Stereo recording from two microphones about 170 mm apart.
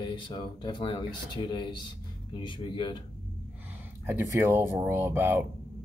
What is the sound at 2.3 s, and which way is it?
Speech, 30° left (ahead or behind).